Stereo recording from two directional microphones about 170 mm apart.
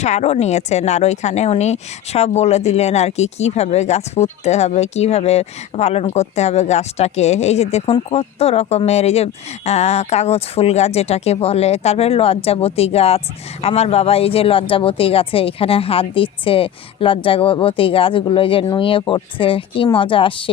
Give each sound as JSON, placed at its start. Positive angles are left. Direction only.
{"t": 0.0, "sound": "speech", "side_deg": 40}